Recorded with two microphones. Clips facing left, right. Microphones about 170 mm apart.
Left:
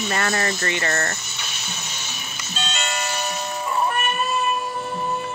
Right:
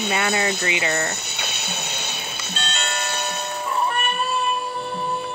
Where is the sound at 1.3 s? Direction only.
65° right (ahead or behind).